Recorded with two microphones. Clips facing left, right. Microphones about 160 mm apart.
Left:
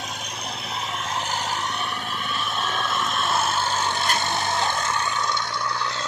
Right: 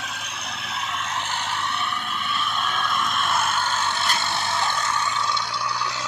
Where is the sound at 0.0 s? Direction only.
35° left (ahead or behind).